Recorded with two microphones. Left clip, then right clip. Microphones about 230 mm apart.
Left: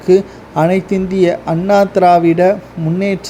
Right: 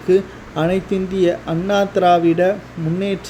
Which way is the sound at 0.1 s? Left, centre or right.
Centre.